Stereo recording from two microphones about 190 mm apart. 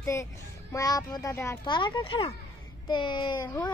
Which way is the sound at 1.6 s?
25° left (ahead or behind).